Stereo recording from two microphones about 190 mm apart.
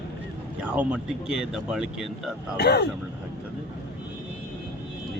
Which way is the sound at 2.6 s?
60° left (ahead or behind).